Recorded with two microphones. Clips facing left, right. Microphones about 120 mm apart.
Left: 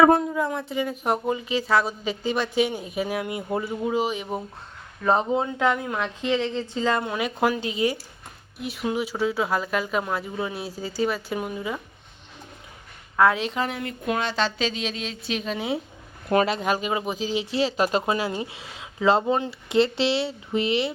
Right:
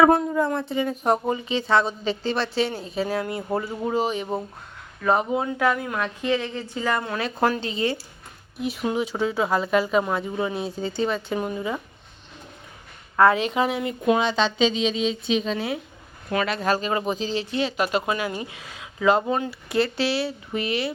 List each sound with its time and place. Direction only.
0.0 s a woman's voice: centre (ahead or behind); by 3.4 s 15° left (ahead or behind)
3.8 s speech: 5° left (ahead or behind)
5.0 s a woman's voice: 25° left (ahead or behind); by 11.8 s centre (ahead or behind)
13.1 s speech: centre (ahead or behind)
15.5 s a woman's voice: 20° left (ahead or behind)
17.4 s speech: 30° left (ahead or behind)